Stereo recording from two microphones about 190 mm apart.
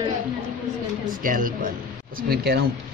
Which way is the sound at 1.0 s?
45° right (ahead or behind).